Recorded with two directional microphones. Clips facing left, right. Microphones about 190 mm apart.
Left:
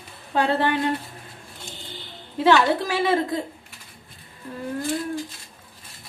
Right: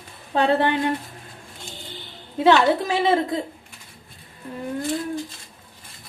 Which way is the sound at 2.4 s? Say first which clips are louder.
Right 2 dB; 20° right (ahead or behind).